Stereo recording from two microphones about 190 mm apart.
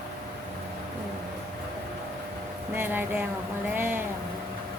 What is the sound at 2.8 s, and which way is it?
Speech, 10° right (ahead or behind).